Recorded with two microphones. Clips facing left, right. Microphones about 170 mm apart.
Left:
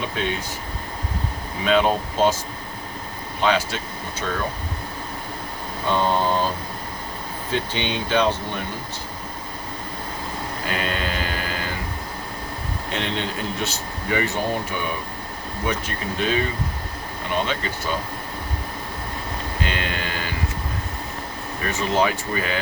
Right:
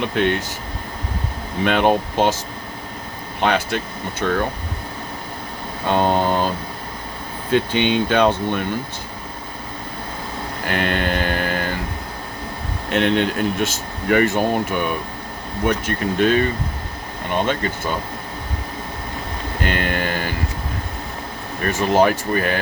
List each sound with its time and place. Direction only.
0.0 s speech: 70° right (ahead or behind)
1.6 s speech: 65° right (ahead or behind)
3.4 s speech: 55° right (ahead or behind)
5.9 s speech: 60° right (ahead or behind)
7.5 s speech: 55° right (ahead or behind)
10.7 s mantra: 65° right (ahead or behind)
12.9 s speech: 60° right (ahead or behind)
19.6 s a sound: 55° right (ahead or behind)
21.6 s a sound: 50° right (ahead or behind)